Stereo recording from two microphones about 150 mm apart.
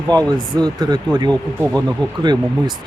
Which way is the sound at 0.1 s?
30° right (ahead or behind).